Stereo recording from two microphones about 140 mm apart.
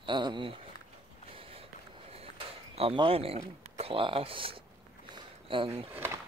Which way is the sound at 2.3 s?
40° right (ahead or behind).